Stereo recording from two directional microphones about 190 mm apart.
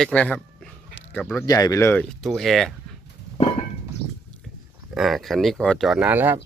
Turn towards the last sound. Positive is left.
turn(degrees=-10)  # may be behind; listen again after turning